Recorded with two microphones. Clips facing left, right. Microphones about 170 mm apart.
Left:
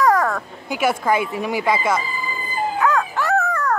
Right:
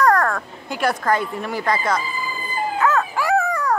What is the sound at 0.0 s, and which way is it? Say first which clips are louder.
Speech: even; centre (ahead or behind).